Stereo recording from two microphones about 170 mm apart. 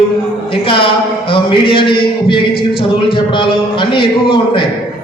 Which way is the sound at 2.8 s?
30° left (ahead or behind).